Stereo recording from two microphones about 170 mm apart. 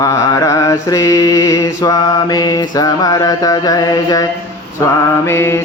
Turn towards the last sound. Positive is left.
turn(degrees=15)  # may be behind; listen again after turning